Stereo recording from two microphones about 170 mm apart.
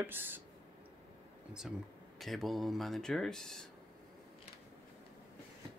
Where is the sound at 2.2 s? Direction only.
Centre (ahead or behind).